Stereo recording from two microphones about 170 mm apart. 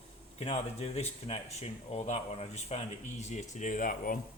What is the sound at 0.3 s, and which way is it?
Speech, 35° left (ahead or behind).